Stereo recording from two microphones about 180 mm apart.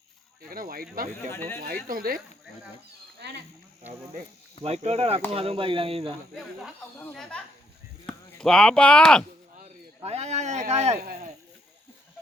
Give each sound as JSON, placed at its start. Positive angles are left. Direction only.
{"t": 0.5, "sound": "speech", "side_deg": -55}
{"t": 1.3, "sound": "speech", "side_deg": 15}
{"t": 1.6, "sound": "speech", "side_deg": -55}
{"t": 4.6, "sound": "speech", "side_deg": -35}
{"t": 6.3, "sound": "speech", "side_deg": 0}
{"t": 10.0, "sound": "speech", "side_deg": -35}